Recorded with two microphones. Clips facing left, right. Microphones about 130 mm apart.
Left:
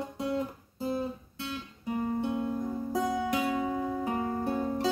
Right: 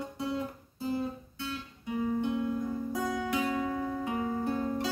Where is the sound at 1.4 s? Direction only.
30° left (ahead or behind).